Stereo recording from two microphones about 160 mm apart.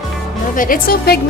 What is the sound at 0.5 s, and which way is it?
Speech, 60° left (ahead or behind).